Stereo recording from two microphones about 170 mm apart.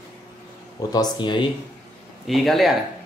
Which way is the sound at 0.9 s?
25° left (ahead or behind).